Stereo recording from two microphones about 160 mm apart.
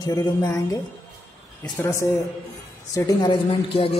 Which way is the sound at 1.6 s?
15° left (ahead or behind).